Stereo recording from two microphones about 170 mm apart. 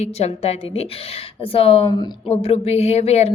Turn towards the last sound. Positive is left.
turn(degrees=40)  # may be behind; listen again after turning